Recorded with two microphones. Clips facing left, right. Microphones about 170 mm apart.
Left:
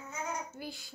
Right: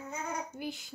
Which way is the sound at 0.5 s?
20° right (ahead or behind).